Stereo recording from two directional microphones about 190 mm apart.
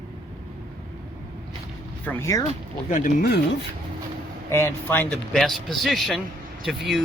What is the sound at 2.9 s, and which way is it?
Speech, 45° left (ahead or behind).